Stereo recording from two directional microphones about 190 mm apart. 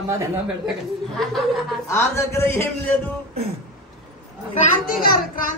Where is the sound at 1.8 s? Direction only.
15° left (ahead or behind).